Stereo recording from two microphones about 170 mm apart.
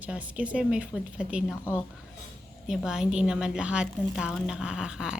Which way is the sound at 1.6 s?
15° left (ahead or behind).